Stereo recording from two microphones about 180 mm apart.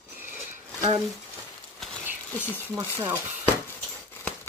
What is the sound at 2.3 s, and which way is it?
Speech, 10° left (ahead or behind).